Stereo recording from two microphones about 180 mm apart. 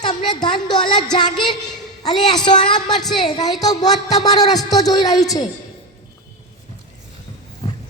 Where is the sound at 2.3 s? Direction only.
25° left (ahead or behind).